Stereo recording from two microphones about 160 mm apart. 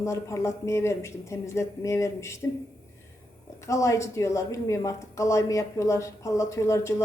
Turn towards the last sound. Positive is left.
turn(degrees=20)  # may be behind; listen again after turning